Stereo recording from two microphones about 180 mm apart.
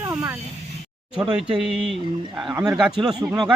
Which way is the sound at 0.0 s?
15° right (ahead or behind).